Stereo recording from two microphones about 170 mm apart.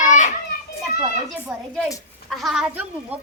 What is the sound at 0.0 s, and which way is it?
Children playing, 45° left (ahead or behind).